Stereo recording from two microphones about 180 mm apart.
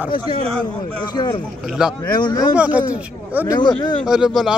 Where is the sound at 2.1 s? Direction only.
25° left (ahead or behind).